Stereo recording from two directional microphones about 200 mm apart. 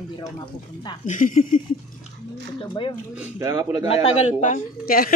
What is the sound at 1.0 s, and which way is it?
Speech, 40° left (ahead or behind).